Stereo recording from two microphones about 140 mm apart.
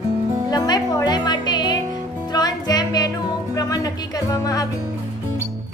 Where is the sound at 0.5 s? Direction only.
30° left (ahead or behind).